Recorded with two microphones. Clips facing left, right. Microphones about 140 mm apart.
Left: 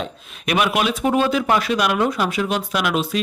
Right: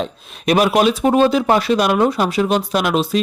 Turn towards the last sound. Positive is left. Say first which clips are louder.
# right 4 dB
turn(degrees=-35)  # may be behind; listen again after turning